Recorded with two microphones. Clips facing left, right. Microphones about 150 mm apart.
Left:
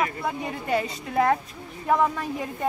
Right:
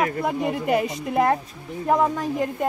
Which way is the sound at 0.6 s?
10° right (ahead or behind).